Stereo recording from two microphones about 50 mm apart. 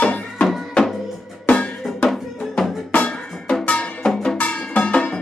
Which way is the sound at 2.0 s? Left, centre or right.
Centre.